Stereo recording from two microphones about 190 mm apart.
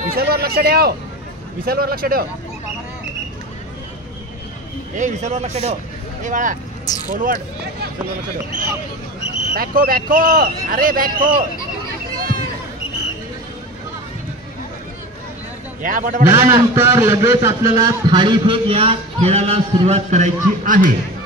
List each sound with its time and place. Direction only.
0.1 s speech: 55° right (ahead or behind)
4.9 s a man's voice: 40° right (ahead or behind)
9.6 s speech: 50° right (ahead or behind)
12.2 s a sound: 50° right (ahead or behind)
15.8 s speech: 45° right (ahead or behind)
16.3 s a man's voice: 15° right (ahead or behind); by 20.9 s 45° right (ahead or behind)